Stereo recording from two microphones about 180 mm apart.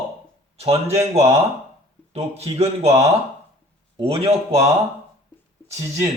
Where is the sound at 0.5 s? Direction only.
35° right (ahead or behind).